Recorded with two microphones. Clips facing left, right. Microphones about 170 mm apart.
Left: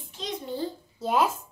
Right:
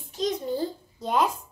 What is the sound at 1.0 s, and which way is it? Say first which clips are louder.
Speech: even; 5° left (ahead or behind).